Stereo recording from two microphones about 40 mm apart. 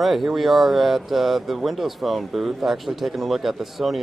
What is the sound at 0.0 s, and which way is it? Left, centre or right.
Speech, centre.